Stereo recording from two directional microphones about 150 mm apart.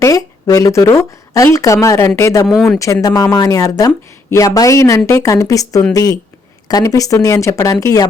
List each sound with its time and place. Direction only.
0.0 s speech: 20° left (ahead or behind)
2.5 s speech: centre (ahead or behind)
2.7 s a woman's voice: 20° left (ahead or behind)